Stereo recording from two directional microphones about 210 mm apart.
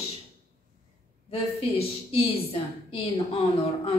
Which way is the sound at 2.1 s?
25° left (ahead or behind).